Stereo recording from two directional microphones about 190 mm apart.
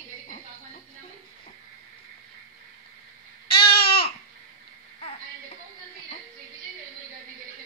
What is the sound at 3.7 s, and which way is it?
Babbling, 55° left (ahead or behind).